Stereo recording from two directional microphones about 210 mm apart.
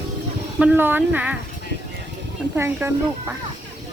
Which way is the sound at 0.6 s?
10° right (ahead or behind).